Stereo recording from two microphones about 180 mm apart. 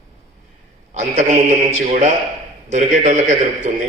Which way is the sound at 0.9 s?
40° right (ahead or behind).